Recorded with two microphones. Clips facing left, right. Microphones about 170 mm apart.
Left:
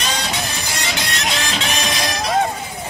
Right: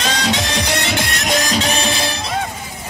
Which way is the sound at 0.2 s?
90° right.